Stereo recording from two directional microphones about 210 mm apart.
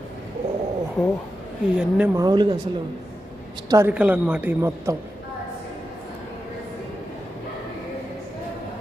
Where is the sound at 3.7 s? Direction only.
10° right (ahead or behind).